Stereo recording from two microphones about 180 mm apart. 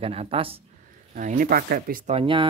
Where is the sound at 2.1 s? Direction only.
30° right (ahead or behind).